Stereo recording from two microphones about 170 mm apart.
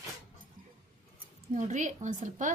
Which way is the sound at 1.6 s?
45° right (ahead or behind).